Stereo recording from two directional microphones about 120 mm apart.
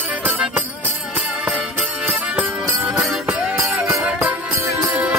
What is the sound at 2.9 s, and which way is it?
Music, centre (ahead or behind).